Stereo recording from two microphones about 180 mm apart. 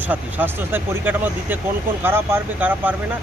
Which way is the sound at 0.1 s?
10° right (ahead or behind).